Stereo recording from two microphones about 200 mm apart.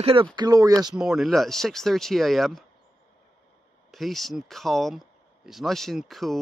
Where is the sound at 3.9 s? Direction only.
Centre (ahead or behind).